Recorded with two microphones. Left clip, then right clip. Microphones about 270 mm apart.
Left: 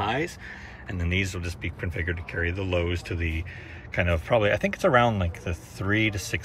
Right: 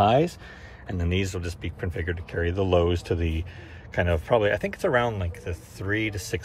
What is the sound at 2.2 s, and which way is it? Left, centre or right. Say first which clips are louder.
Speech: right 2 dB; right.